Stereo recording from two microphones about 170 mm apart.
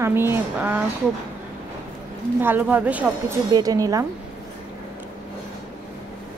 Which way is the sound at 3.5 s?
20° right (ahead or behind).